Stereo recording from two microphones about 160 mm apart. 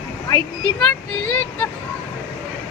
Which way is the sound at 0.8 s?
5° left (ahead or behind).